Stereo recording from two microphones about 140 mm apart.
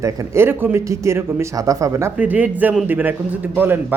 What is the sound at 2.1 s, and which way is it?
A man's voice, 10° right (ahead or behind).